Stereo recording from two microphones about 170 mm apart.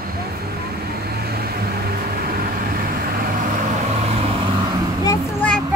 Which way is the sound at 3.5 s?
45° right (ahead or behind).